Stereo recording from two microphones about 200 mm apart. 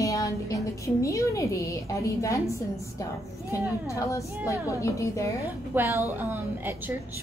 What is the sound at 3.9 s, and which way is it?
A woman's voice, 15° left (ahead or behind).